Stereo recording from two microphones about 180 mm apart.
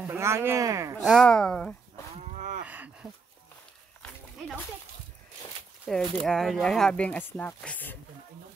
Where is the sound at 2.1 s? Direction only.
40° right (ahead or behind).